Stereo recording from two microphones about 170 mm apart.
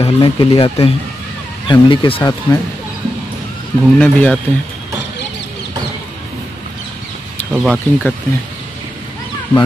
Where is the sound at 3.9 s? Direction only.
5° left (ahead or behind).